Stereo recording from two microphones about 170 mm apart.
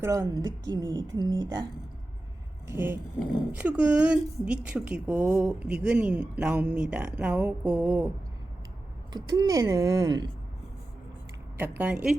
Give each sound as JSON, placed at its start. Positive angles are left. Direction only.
{"t": 0.0, "sound": "speech", "side_deg": -20}
{"t": 2.6, "sound": "speech", "side_deg": -15}
{"t": 9.1, "sound": "speech", "side_deg": -25}
{"t": 11.5, "sound": "speech", "side_deg": -10}